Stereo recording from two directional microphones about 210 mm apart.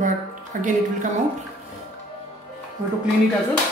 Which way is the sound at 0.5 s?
40° right (ahead or behind).